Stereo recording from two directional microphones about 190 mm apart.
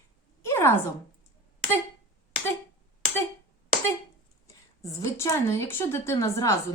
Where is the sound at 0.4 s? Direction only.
15° left (ahead or behind).